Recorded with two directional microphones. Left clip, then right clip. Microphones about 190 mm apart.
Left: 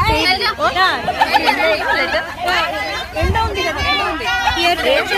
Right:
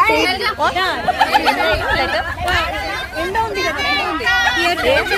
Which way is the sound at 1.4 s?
55° right (ahead or behind).